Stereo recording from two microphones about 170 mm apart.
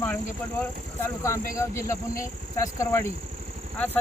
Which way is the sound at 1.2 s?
15° left (ahead or behind).